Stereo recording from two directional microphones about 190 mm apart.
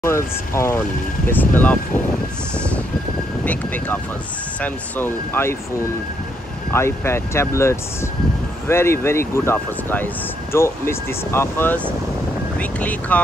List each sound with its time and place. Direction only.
0.0 s speech: 15° left (ahead or behind)
3.4 s speech: 10° left (ahead or behind)
6.7 s speech: 15° left (ahead or behind)